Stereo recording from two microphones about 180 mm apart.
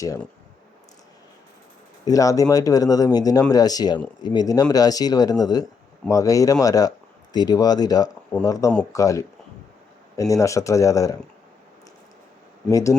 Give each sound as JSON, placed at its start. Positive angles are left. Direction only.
{"t": 2.0, "sound": "speech", "side_deg": 20}
{"t": 12.7, "sound": "speech", "side_deg": 20}